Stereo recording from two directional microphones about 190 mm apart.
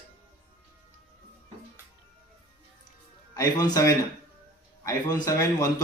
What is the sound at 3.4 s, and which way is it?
A man's voice, 20° left (ahead or behind).